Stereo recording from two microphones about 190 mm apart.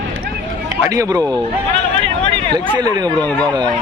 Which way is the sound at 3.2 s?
10° left (ahead or behind).